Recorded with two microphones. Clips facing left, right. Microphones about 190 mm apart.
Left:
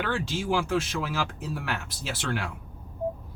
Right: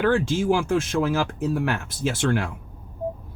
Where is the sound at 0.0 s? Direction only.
50° right (ahead or behind).